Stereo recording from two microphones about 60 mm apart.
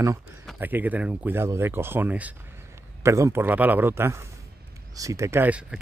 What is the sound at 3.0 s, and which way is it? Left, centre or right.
Speech, right.